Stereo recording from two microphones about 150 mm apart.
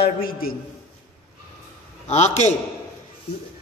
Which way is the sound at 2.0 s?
50° left (ahead or behind).